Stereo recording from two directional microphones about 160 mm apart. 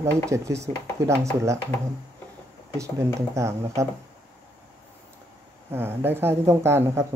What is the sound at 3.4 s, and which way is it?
Speech, 15° right (ahead or behind).